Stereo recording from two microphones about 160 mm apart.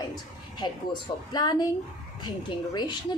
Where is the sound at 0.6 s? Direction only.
25° left (ahead or behind).